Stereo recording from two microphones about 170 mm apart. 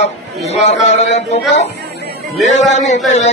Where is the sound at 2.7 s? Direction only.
40° left (ahead or behind).